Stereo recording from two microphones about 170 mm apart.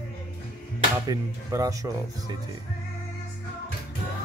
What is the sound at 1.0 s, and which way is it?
Speech, 20° right (ahead or behind).